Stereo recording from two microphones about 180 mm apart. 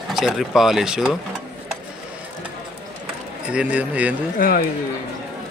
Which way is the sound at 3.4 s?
5° right (ahead or behind).